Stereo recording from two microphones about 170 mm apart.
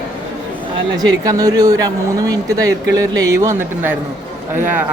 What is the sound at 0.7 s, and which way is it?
Speech, 20° right (ahead or behind).